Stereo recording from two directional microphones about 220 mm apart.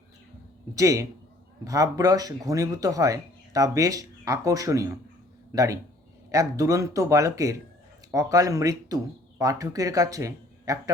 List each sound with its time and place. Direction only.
0.8 s speech: 15° right (ahead or behind)